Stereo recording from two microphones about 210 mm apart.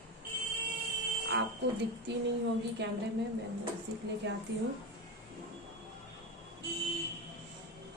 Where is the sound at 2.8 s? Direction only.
55° right (ahead or behind).